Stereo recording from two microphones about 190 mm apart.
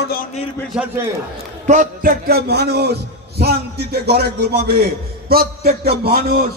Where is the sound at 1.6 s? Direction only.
45° right (ahead or behind).